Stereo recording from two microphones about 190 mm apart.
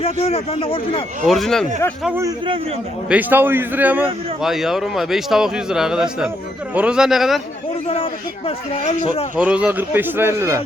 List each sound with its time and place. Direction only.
0.0 s a man's voice: 30° left (ahead or behind)
1.3 s a man's voice: centre (ahead or behind)
2.0 s a man's voice: 10° right (ahead or behind)
7.9 s a man's voice: 30° left (ahead or behind)
9.3 s speech: 5° right (ahead or behind)